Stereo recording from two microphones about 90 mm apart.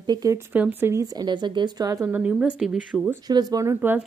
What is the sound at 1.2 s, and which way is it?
Speech, 60° right (ahead or behind).